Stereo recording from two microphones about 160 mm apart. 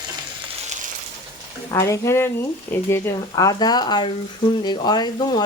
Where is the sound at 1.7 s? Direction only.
20° left (ahead or behind).